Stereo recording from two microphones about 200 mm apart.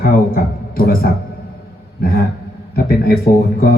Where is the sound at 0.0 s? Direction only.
45° left (ahead or behind).